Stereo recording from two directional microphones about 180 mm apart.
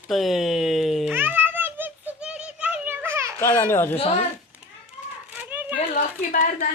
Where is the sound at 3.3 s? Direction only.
15° left (ahead or behind).